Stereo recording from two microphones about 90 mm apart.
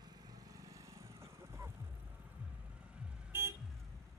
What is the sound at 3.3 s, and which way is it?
Vehicle, 25° right (ahead or behind).